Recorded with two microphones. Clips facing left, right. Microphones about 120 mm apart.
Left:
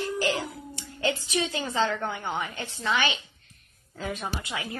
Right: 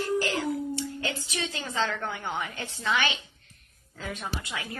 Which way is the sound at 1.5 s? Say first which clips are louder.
Left 1 dB; 10° left (ahead or behind).